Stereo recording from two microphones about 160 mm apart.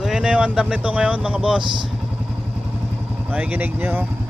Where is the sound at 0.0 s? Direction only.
5° right (ahead or behind).